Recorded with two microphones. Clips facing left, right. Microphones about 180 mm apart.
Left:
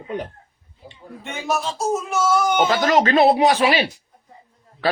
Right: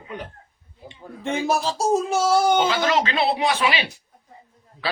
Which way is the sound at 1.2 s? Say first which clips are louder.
Right 2 dB; 30° right (ahead or behind).